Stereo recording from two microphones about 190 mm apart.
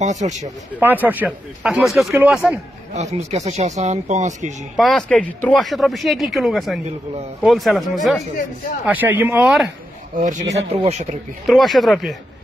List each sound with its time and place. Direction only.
0.0 s speech: 40° right (ahead or behind)
0.7 s speech: 10° right (ahead or behind)
2.9 s speech: 35° right (ahead or behind)
4.7 s speech: centre (ahead or behind)
10.1 s speech: 40° right (ahead or behind)
11.4 s speech: centre (ahead or behind)